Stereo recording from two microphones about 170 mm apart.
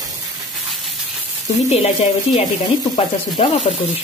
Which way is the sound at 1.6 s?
40° left (ahead or behind).